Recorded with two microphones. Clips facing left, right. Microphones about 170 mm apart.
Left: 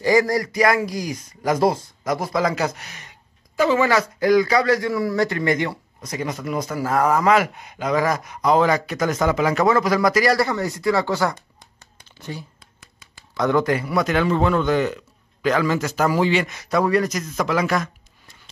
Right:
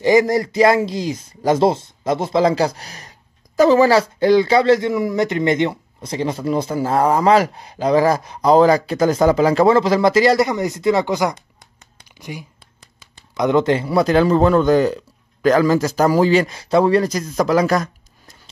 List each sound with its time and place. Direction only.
0.0 s a man's voice: 20° right (ahead or behind); by 18.4 s 40° right (ahead or behind)